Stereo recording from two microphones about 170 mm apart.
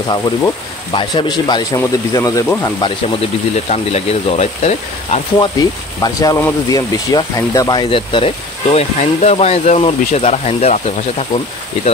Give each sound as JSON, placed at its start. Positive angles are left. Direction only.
{"t": 0.9, "sound": "speech", "side_deg": 25}
{"t": 3.7, "sound": "speech", "side_deg": 40}
{"t": 5.4, "sound": "speech", "side_deg": 20}
{"t": 7.9, "sound": "speech", "side_deg": 30}